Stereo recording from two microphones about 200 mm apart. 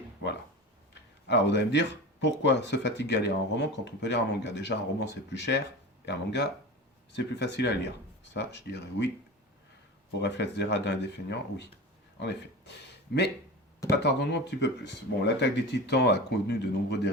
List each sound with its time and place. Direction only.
1.3 s speech: 60° left (ahead or behind)
10.2 s speech: 60° left (ahead or behind)